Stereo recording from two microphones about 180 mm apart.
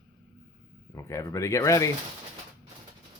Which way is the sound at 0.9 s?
15° left (ahead or behind).